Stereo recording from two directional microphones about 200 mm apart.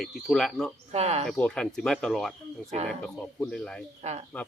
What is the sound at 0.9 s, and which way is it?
Speech, 30° right (ahead or behind).